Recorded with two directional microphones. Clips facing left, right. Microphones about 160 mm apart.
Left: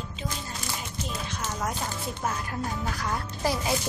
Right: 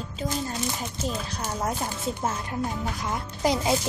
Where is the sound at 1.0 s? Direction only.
35° right (ahead or behind).